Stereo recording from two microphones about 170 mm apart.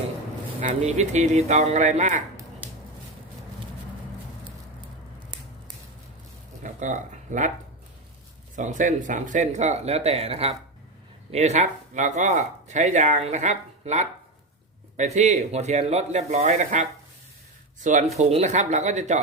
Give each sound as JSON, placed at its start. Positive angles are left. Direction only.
{"t": 0.6, "sound": "speech", "side_deg": -40}
{"t": 6.6, "sound": "a sound", "side_deg": -45}
{"t": 8.5, "sound": "speech", "side_deg": -50}
{"t": 17.8, "sound": "speech", "side_deg": -45}